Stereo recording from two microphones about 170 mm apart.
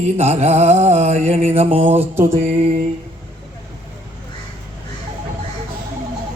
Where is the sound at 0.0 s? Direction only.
40° right (ahead or behind).